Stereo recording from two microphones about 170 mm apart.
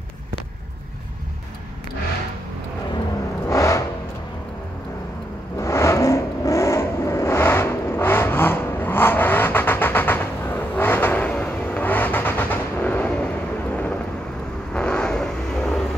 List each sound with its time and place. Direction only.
3.4 s vehicle: 20° left (ahead or behind)
5.6 s vehicle: 15° left (ahead or behind)
14.7 s vehicle: 5° left (ahead or behind)